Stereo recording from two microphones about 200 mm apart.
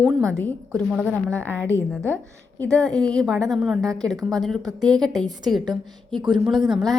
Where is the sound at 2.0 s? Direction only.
15° right (ahead or behind).